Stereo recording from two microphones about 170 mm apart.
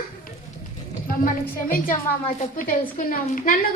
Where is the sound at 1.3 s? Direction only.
55° left (ahead or behind).